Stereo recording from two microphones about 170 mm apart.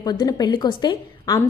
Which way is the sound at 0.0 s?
20° left (ahead or behind).